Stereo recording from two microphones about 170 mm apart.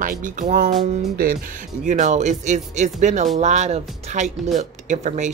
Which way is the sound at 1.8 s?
45° right (ahead or behind).